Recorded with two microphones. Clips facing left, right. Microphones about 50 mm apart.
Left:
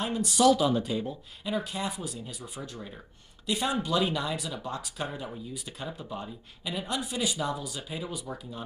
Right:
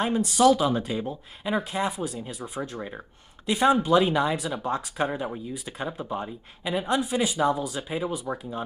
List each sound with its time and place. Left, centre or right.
0.0 s speech: right